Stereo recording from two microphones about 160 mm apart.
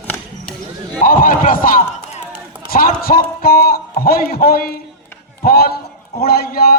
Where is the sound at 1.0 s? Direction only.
60° left (ahead or behind).